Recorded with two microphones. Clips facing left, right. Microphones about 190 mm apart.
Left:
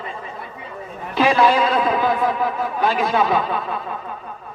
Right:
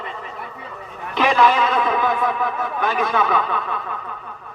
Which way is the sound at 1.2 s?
30° left (ahead or behind).